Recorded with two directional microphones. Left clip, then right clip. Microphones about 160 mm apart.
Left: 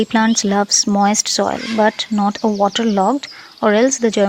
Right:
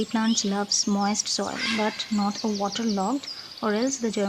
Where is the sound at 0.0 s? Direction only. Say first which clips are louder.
Left 10 dB; 50° left (ahead or behind).